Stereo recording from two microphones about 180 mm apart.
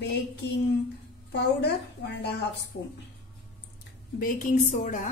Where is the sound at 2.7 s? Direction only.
90° left.